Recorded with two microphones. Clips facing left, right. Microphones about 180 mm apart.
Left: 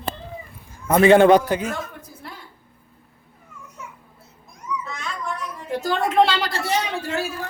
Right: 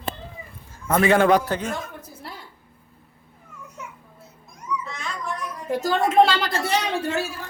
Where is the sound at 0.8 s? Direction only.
20° left (ahead or behind).